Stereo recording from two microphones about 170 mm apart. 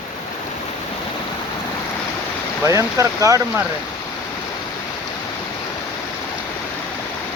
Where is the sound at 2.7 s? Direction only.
15° right (ahead or behind).